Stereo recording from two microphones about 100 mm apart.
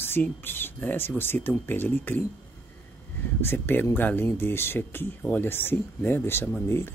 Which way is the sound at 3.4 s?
20° left (ahead or behind).